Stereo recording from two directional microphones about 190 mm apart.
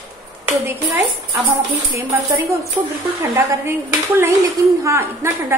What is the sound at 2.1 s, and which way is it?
A woman's voice, 10° right (ahead or behind).